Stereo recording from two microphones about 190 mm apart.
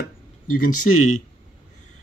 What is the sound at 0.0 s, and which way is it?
Speech, 50° left (ahead or behind).